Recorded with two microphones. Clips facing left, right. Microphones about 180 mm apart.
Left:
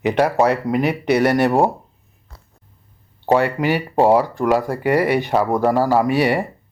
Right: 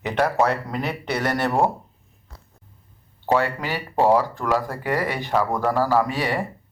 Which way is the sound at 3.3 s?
20° left (ahead or behind).